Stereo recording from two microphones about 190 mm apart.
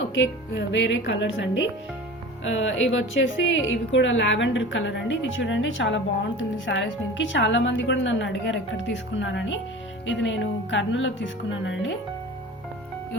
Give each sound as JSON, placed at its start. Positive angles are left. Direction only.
{"t": 0.1, "sound": "a woman's voice", "side_deg": 70}
{"t": 2.4, "sound": "a woman's voice", "side_deg": 85}
{"t": 6.7, "sound": "a woman's voice", "side_deg": 65}